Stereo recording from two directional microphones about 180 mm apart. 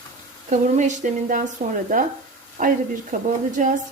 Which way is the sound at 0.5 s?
40° right (ahead or behind).